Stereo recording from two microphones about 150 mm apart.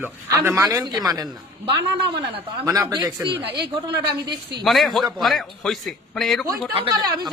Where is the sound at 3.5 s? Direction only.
90° right.